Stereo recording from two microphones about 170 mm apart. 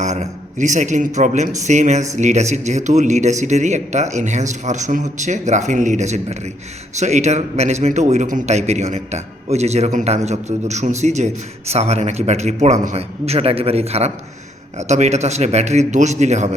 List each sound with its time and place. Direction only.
0.0 s a man's voice: 45° right (ahead or behind)